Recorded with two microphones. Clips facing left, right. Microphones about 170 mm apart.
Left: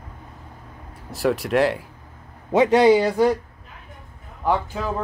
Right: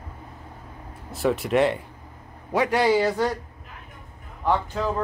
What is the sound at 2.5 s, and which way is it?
Speech, 20° left (ahead or behind).